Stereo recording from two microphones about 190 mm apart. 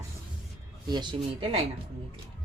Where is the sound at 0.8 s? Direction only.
25° right (ahead or behind).